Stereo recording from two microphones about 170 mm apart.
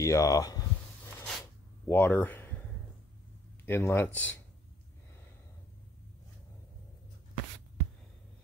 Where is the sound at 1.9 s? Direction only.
10° left (ahead or behind).